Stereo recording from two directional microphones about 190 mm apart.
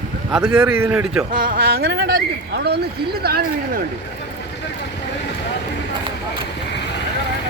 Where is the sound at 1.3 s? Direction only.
50° right (ahead or behind).